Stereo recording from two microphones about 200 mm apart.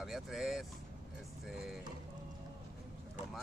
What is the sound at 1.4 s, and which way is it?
Music, centre (ahead or behind).